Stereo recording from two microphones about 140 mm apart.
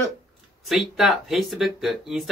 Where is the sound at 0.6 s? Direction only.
Centre (ahead or behind).